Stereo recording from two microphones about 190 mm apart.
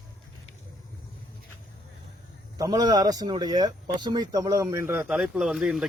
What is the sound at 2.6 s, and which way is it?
Speech, 20° right (ahead or behind).